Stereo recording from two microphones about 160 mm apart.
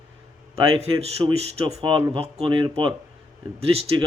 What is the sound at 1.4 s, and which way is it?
Speech, 40° right (ahead or behind).